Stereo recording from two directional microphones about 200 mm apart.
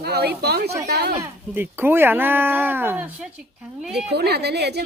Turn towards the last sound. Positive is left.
turn(degrees=-55)  # may be behind; listen again after turning